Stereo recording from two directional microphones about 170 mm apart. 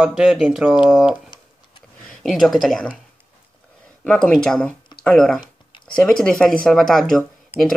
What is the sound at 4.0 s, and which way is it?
Speech, 5° left (ahead or behind).